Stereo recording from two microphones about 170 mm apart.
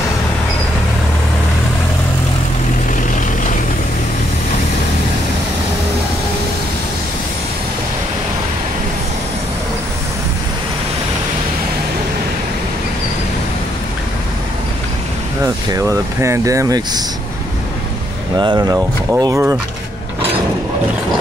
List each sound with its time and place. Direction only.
15.4 s speech: 20° right (ahead or behind)
18.4 s speech: 25° right (ahead or behind)